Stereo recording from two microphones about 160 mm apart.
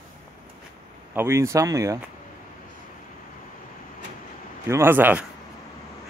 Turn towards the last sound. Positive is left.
turn(degrees=-10)  # may be behind; listen again after turning